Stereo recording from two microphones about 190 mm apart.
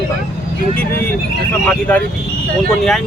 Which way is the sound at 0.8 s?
10° left (ahead or behind).